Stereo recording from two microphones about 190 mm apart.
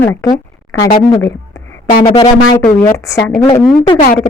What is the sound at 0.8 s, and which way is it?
Speech, 45° left (ahead or behind).